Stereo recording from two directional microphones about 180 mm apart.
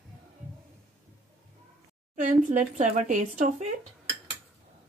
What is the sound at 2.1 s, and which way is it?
Speech, 40° right (ahead or behind).